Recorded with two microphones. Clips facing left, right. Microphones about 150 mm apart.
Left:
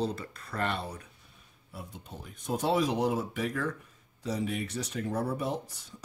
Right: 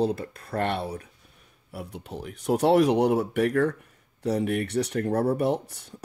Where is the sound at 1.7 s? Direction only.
70° right (ahead or behind).